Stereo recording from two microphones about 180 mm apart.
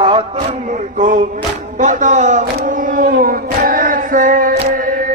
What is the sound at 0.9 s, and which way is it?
Music, 45° right (ahead or behind).